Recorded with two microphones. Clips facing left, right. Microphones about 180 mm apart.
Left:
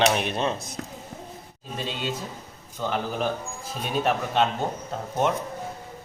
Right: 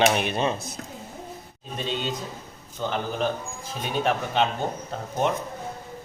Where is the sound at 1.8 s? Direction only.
5° left (ahead or behind).